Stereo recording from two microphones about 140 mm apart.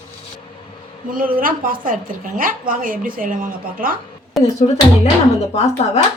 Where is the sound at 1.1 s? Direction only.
90° right.